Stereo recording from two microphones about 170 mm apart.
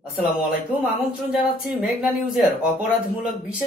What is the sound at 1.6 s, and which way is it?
Speech, centre (ahead or behind).